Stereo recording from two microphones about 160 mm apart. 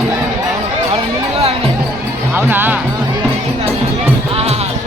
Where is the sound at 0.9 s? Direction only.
40° right (ahead or behind).